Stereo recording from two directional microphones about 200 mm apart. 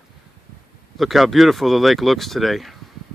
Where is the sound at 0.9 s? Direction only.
Centre (ahead or behind).